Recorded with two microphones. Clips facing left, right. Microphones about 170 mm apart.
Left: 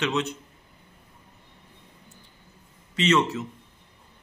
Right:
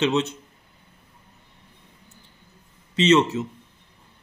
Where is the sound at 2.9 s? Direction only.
20° right (ahead or behind).